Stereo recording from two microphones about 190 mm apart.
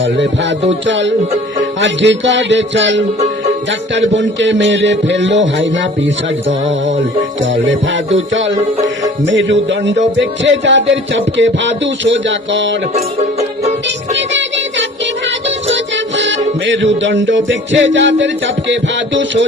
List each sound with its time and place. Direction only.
0.9 s music: 70° right (ahead or behind)
7.5 s music: 80° right
14.2 s music: 70° right (ahead or behind)